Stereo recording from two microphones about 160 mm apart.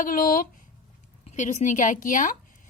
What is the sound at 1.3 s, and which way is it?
A woman's voice, 50° left (ahead or behind).